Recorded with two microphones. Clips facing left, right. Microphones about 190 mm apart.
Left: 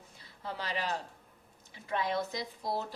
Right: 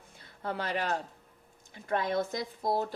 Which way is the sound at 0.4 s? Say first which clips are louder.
Right 4 dB; 55° right (ahead or behind).